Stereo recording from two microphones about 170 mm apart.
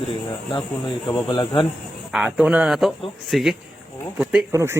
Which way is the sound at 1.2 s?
30° left (ahead or behind).